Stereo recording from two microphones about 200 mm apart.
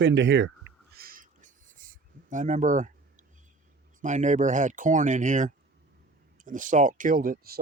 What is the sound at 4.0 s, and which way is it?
Speech, 35° right (ahead or behind).